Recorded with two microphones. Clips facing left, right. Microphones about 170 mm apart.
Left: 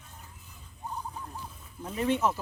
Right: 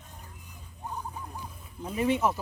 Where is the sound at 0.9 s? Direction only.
10° right (ahead or behind).